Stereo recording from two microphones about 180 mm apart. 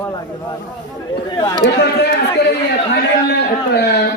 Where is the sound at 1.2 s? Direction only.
20° left (ahead or behind).